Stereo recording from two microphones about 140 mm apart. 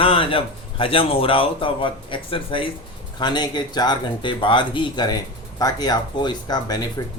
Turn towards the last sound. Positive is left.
turn(degrees=30)  # may be behind; listen again after turning